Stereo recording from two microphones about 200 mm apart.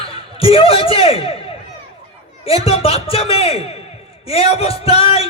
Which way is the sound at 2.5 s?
30° left (ahead or behind).